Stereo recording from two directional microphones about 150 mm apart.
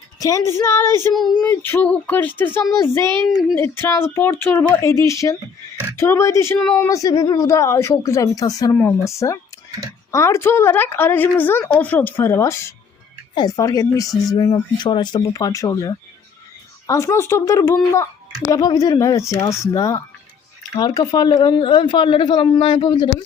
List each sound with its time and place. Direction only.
0.2 s a woman's voice: 20° left (ahead or behind)
3.0 s speech: 30° right (ahead or behind)
3.6 s a woman's voice: 15° left (ahead or behind)
6.6 s speech: 5° left (ahead or behind)
6.8 s a woman's voice: 20° left (ahead or behind)